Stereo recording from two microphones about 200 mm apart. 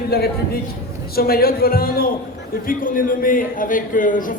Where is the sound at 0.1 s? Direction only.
50° left (ahead or behind).